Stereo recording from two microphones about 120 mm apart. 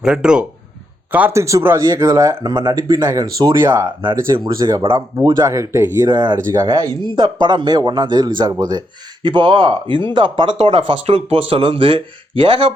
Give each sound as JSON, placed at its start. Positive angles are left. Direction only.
{"t": 0.0, "sound": "speech", "side_deg": -5}
{"t": 1.1, "sound": "speech", "side_deg": -20}
{"t": 2.4, "sound": "speech", "side_deg": -40}
{"t": 4.0, "sound": "speech", "side_deg": -35}
{"t": 6.1, "sound": "speech", "side_deg": -40}
{"t": 6.5, "sound": "speech", "side_deg": -25}
{"t": 7.0, "sound": "speech", "side_deg": -40}